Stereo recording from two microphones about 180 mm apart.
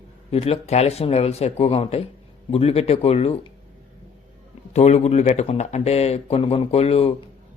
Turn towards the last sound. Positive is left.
turn(degrees=35)  # may be behind; listen again after turning